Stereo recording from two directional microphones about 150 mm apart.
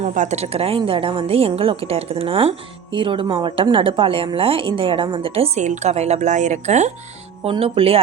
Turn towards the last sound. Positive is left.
turn(degrees=-40)  # may be behind; listen again after turning